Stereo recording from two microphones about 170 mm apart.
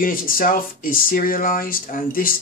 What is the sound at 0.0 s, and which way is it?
Speech, 55° left (ahead or behind).